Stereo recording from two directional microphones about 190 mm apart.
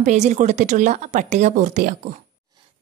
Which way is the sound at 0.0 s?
35° right (ahead or behind).